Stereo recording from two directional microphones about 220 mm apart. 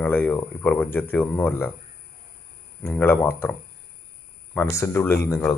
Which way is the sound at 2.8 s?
10° left (ahead or behind).